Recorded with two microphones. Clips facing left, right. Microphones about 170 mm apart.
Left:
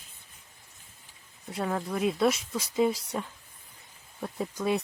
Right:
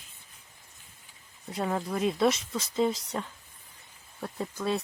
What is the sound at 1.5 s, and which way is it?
Speech, 5° right (ahead or behind).